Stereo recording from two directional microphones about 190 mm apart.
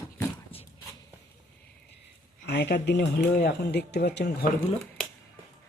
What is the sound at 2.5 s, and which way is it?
Speech, 60° left (ahead or behind).